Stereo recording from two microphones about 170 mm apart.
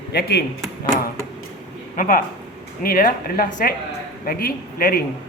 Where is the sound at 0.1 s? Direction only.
70° left (ahead or behind).